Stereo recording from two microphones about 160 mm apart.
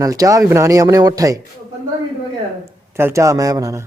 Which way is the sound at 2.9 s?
15° right (ahead or behind).